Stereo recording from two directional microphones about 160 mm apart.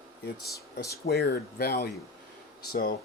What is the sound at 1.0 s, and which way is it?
Speech, 80° left.